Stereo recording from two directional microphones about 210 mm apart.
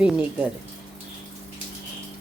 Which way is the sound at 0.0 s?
5° right (ahead or behind).